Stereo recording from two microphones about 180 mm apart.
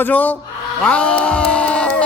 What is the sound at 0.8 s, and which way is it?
Music, 5° left (ahead or behind).